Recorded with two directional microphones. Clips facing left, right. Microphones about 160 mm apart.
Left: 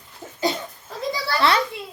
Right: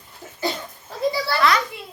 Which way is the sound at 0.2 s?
20° left (ahead or behind).